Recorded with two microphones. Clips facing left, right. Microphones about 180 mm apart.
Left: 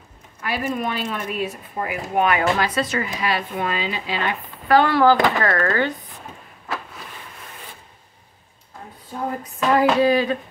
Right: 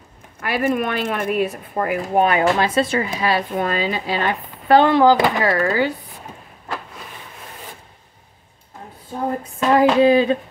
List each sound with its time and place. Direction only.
0.4 s speech: 60° right (ahead or behind)
2.1 s speech: 30° right (ahead or behind)
4.6 s speech: 20° right (ahead or behind)
9.4 s hands: 25° right (ahead or behind)